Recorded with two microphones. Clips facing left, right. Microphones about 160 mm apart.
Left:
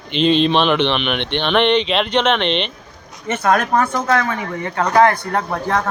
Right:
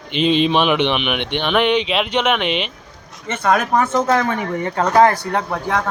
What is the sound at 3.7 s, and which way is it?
Speech, 15° right (ahead or behind).